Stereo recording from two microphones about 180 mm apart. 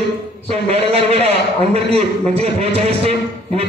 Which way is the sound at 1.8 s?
35° right (ahead or behind).